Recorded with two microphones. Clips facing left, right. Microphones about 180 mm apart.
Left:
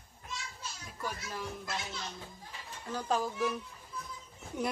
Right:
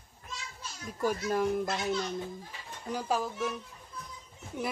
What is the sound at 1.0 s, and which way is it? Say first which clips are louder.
Speech: right 11 dB; 50° right (ahead or behind).